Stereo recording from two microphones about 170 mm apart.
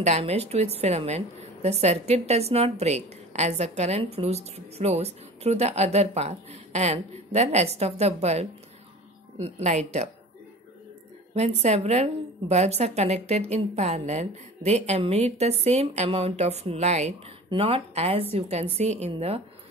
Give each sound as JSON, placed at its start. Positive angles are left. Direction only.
{"t": 0.0, "sound": "a woman's voice", "side_deg": -40}
{"t": 11.3, "sound": "a woman's voice", "side_deg": -40}